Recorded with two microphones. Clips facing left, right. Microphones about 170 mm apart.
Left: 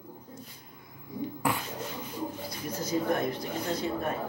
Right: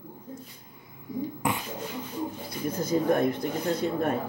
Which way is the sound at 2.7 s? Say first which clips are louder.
Right 4 dB; 55° right (ahead or behind).